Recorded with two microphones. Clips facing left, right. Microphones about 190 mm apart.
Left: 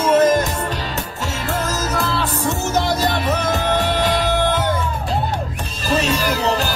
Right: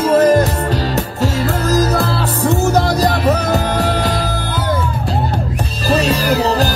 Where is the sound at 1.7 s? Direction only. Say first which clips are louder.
Right 7 dB; 35° right (ahead or behind).